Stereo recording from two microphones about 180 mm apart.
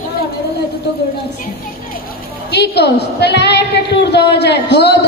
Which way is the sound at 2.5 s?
70° left (ahead or behind).